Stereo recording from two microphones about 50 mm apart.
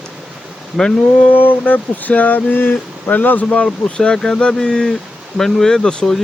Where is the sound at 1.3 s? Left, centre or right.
Left.